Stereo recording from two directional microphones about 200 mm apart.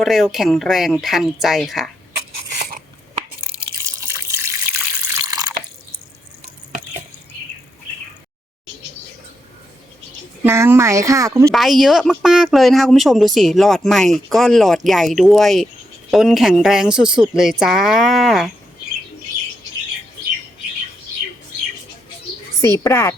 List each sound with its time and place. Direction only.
0.0 s speech: centre (ahead or behind)
2.6 s a sound: 50° right (ahead or behind)
3.5 s water: 15° right (ahead or behind)
10.4 s speech: 15° right (ahead or behind)
11.5 s speech: centre (ahead or behind)
22.6 s speech: 15° left (ahead or behind)